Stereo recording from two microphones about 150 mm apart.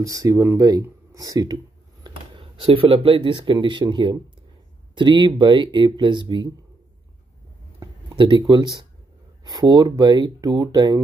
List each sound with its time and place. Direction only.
0.0 s speech: 20° right (ahead or behind)
7.8 s speech: 30° right (ahead or behind)